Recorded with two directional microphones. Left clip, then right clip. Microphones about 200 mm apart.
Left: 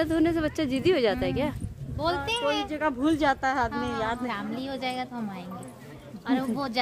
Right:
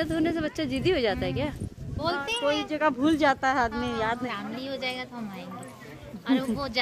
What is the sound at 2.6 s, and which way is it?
Speech, 40° right (ahead or behind).